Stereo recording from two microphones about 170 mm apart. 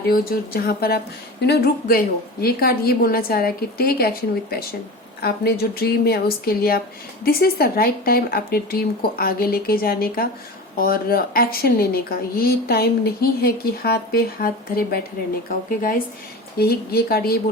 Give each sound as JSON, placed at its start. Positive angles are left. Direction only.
{"t": 0.1, "sound": "speech", "side_deg": 60}
{"t": 5.2, "sound": "speech", "side_deg": 70}
{"t": 16.6, "sound": "speech", "side_deg": 65}